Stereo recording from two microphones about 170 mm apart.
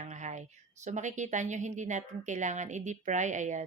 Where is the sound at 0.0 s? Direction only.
45° right (ahead or behind).